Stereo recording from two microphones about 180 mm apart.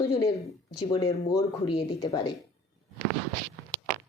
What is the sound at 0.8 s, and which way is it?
Speech, 20° left (ahead or behind).